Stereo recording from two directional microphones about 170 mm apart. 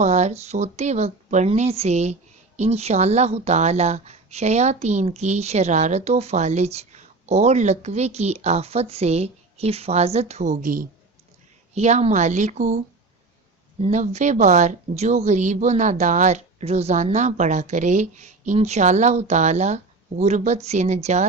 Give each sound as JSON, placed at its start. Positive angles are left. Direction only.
{"t": 0.0, "sound": "a woman's voice", "side_deg": -40}
{"t": 11.7, "sound": "a woman's voice", "side_deg": -40}
{"t": 13.8, "sound": "speech", "side_deg": -40}